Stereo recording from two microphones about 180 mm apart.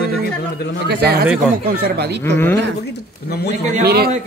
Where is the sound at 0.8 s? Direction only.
65° right (ahead or behind).